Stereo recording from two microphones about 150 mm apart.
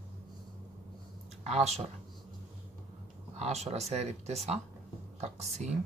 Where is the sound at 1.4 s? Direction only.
45° right (ahead or behind).